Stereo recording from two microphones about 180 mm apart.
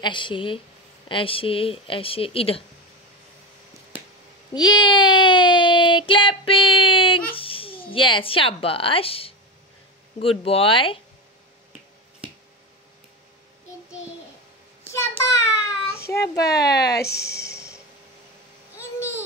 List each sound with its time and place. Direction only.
0.0 s speech: 25° left (ahead or behind)
4.6 s child singing: 25° left (ahead or behind)
7.3 s speech: 30° left (ahead or behind)
10.4 s speech: 30° left (ahead or behind)
15.0 s child singing: 15° left (ahead or behind)
16.1 s a child's voice: 20° left (ahead or behind)
16.5 s speech: 65° left (ahead or behind)
17.0 s a sound: 15° left (ahead or behind)
18.8 s babbling: 15° left (ahead or behind)